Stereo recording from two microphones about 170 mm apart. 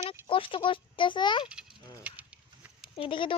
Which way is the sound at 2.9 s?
30° left (ahead or behind).